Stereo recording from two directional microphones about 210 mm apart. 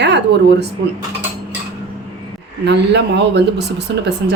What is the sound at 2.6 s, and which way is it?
Speech, 55° right (ahead or behind).